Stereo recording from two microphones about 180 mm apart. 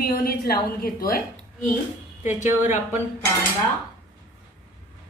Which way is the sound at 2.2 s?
40° left (ahead or behind).